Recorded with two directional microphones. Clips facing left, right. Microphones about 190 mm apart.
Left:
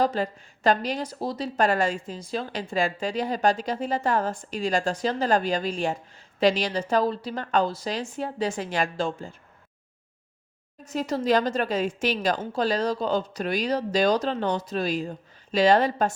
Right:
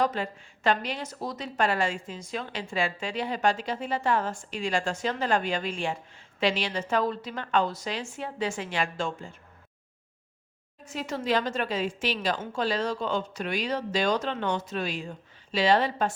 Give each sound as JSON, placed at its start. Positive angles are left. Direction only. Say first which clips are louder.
{"t": 0.0, "sound": "a woman's voice", "louder": "left 3 dB", "side_deg": 35}
{"t": 10.8, "sound": "a woman's voice", "louder": "left 5 dB", "side_deg": 40}